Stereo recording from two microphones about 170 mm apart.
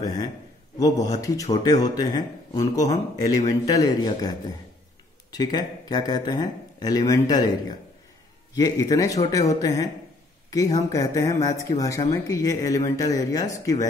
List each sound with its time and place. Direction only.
0.0 s speech: 20° left (ahead or behind)
5.3 s a man's voice: 25° left (ahead or behind)
8.5 s speech: 20° left (ahead or behind)